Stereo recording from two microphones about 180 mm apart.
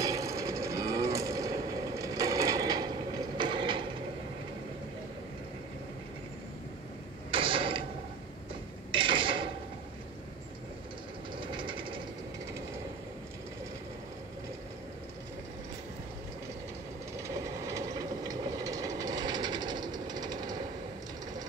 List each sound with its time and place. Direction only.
0.0 s vehicle: 20° right (ahead or behind)
7.2 s mechanisms: 30° right (ahead or behind)
8.9 s a sound: 30° right (ahead or behind)
11.3 s train: 30° right (ahead or behind)
17.2 s train: 15° right (ahead or behind)